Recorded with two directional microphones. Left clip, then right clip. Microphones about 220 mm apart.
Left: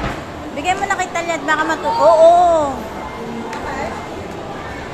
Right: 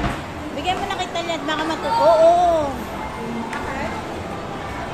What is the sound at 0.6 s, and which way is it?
Speech, 20° left (ahead or behind).